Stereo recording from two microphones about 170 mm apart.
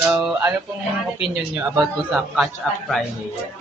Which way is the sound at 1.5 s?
10° right (ahead or behind).